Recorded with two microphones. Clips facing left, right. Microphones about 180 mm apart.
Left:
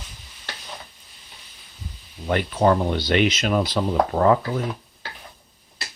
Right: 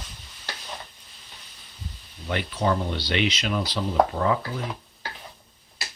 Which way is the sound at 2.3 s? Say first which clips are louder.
Left 6 dB; 50° left (ahead or behind).